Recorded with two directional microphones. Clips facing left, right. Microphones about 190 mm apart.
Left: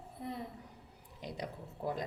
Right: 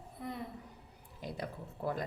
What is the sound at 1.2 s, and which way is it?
Speech, 20° left (ahead or behind).